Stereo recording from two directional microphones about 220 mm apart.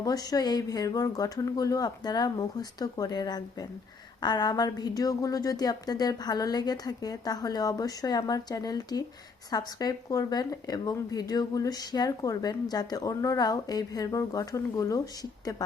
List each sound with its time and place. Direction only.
0.0 s speech: 15° left (ahead or behind)